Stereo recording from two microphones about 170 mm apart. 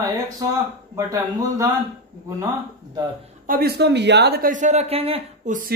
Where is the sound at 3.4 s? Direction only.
65° right (ahead or behind); by 5.5 s 35° right (ahead or behind).